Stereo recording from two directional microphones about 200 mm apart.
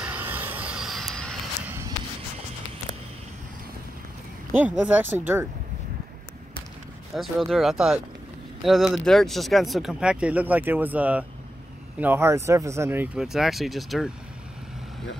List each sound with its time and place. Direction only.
0.0 s a sound: 10° right (ahead or behind)
1.7 s music: 15° right (ahead or behind)
4.5 s speech: 10° right (ahead or behind)
7.2 s speech: centre (ahead or behind)